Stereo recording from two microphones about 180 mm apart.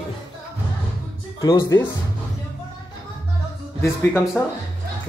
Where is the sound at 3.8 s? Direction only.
10° left (ahead or behind).